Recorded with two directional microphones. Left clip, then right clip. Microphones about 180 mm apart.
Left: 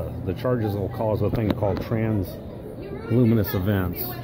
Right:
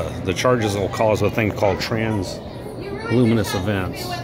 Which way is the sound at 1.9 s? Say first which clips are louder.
Right 4 dB; 20° left (ahead or behind).